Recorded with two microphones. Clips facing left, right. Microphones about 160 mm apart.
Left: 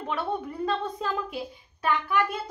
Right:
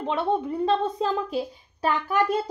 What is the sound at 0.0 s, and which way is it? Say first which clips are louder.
A woman's voice: right 5 dB; 25° right (ahead or behind).